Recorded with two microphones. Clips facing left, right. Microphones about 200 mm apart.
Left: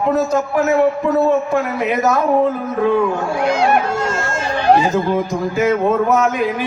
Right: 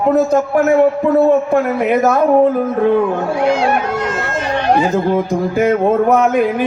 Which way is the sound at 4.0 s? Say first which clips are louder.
Right 1 dB; 30° left (ahead or behind).